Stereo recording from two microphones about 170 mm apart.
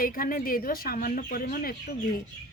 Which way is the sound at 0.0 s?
55° left (ahead or behind).